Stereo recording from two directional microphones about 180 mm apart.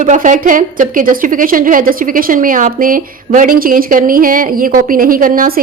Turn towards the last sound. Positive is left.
turn(degrees=-50)  # may be behind; listen again after turning